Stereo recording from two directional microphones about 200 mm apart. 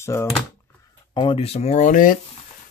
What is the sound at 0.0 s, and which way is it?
Speech, 15° left (ahead or behind).